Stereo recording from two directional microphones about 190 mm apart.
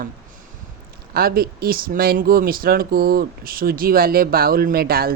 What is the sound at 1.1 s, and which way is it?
Speech, 50° right (ahead or behind).